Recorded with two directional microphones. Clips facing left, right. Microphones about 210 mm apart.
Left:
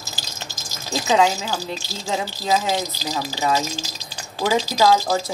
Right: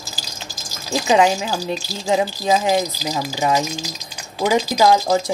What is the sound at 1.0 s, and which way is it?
Speech, 15° right (ahead or behind).